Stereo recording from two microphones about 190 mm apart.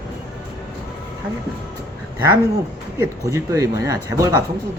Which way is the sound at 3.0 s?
15° right (ahead or behind).